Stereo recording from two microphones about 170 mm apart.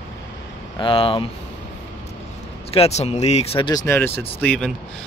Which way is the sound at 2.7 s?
35° left (ahead or behind).